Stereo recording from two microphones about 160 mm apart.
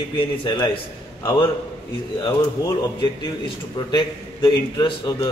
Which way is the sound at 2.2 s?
20° left (ahead or behind).